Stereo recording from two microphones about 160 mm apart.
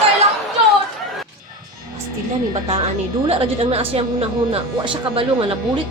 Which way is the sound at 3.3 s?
35° right (ahead or behind).